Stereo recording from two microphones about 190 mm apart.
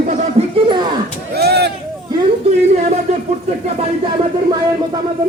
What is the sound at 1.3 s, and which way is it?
Chop, 60° right (ahead or behind).